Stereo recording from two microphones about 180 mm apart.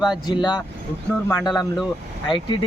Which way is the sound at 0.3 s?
25° left (ahead or behind).